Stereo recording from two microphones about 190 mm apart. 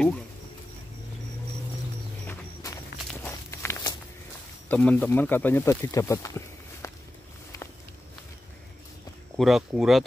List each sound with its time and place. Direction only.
2.2 s walk: 15° left (ahead or behind)
4.6 s speech: 10° left (ahead or behind)
9.4 s speech: centre (ahead or behind)